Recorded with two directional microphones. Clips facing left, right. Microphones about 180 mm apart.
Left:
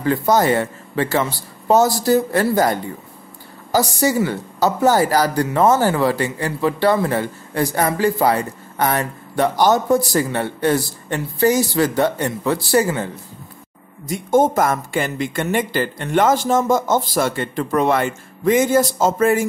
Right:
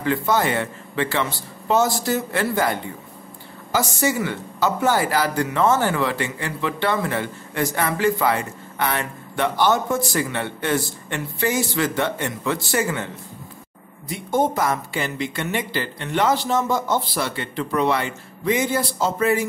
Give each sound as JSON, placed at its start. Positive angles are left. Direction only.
{"t": 0.0, "sound": "speech", "side_deg": 40}
{"t": 14.0, "sound": "speech", "side_deg": 45}